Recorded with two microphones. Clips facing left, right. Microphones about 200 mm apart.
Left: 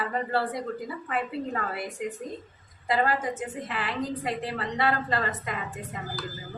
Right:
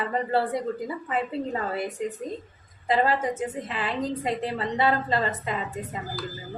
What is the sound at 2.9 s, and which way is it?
A woman's voice, 25° right (ahead or behind).